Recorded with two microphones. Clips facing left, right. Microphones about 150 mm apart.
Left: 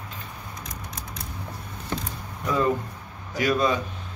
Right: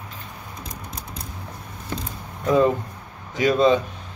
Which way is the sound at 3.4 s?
25° right (ahead or behind).